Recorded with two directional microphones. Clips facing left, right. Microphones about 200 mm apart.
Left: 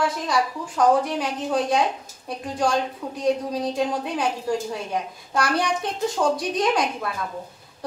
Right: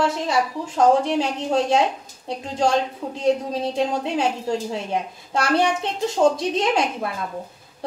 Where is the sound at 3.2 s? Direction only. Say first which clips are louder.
Right 2 dB; 25° right (ahead or behind).